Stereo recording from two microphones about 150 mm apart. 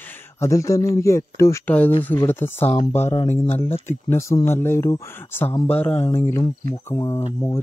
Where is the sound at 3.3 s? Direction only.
15° left (ahead or behind).